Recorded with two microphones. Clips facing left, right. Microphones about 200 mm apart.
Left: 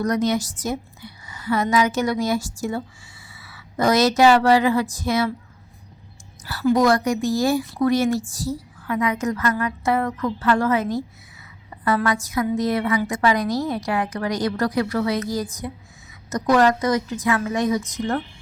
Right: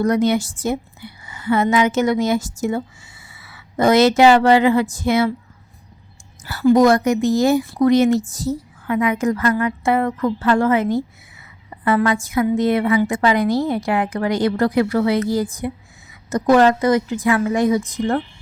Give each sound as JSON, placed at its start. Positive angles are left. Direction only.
{"t": 0.0, "sound": "a woman's voice", "side_deg": -30}
{"t": 3.8, "sound": "a woman's voice", "side_deg": -25}
{"t": 6.7, "sound": "a woman's voice", "side_deg": -20}